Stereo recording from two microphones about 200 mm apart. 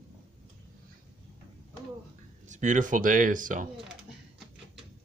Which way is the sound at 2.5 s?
40° right (ahead or behind).